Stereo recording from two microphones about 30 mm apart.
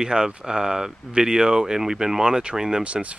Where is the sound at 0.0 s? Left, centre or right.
Right.